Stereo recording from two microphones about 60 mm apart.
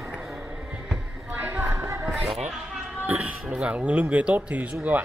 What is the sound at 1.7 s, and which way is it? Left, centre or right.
Music, right.